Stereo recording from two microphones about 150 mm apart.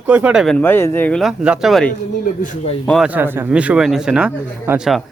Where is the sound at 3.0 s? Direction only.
10° right (ahead or behind).